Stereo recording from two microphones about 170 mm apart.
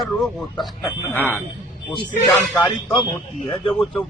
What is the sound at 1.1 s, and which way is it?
Speech, 10° left (ahead or behind).